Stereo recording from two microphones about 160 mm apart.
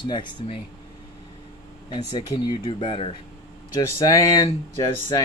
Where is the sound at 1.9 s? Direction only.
25° left (ahead or behind).